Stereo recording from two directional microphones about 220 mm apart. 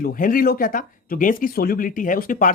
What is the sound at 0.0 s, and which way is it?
Speech, 40° left (ahead or behind).